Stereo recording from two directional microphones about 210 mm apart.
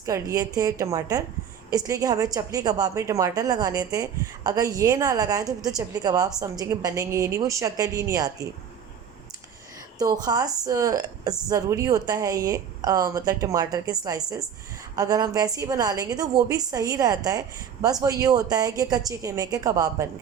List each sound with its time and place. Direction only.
0.0 s a woman's voice: 15° right (ahead or behind)
10.0 s a woman's voice: 20° right (ahead or behind)